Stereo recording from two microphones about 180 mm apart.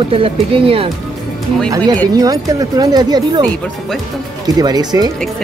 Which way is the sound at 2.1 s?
20° right (ahead or behind).